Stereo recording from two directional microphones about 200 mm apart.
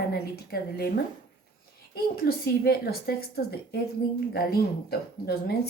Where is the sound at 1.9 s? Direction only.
50° left (ahead or behind).